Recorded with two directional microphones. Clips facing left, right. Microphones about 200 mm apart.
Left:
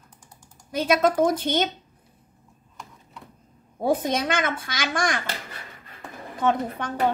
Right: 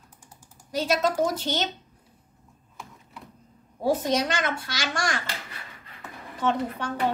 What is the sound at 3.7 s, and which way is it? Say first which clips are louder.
A woman's voice: even; 55° left (ahead or behind).